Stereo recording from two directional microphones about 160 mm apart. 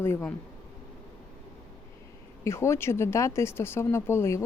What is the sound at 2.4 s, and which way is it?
Speech, 15° left (ahead or behind).